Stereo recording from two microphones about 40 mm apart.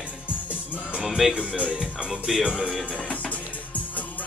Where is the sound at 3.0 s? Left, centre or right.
Left.